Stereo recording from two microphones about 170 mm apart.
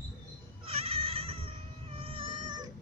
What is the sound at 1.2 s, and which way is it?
Cat, 35° right (ahead or behind).